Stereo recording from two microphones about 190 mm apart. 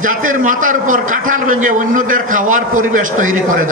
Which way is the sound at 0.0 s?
45° right (ahead or behind).